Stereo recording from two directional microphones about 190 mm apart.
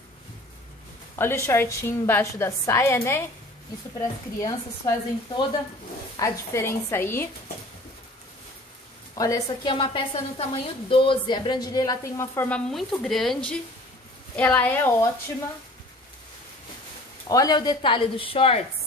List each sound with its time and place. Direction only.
1.1 s a woman's voice: 10° left (ahead or behind)
6.1 s a woman's voice: 15° left (ahead or behind)
9.2 s a woman's voice: 20° left (ahead or behind)
17.3 s a woman's voice: 20° left (ahead or behind)